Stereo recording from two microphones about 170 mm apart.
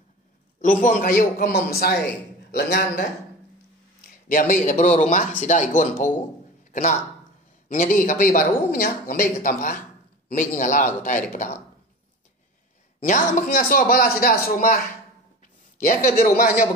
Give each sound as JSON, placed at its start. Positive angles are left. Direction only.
{"t": 0.6, "sound": "a man's voice", "side_deg": 50}
{"t": 4.3, "sound": "speech", "side_deg": 55}
{"t": 13.0, "sound": "speech", "side_deg": 50}